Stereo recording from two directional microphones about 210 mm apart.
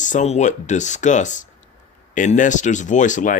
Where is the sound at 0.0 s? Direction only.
35° left (ahead or behind).